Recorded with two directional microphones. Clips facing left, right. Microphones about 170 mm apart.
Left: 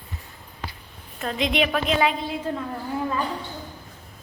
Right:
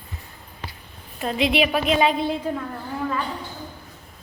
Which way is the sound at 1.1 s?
10° right (ahead or behind).